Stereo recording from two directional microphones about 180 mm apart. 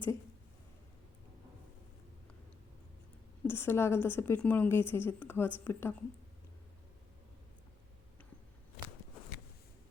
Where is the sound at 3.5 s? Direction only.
15° left (ahead or behind).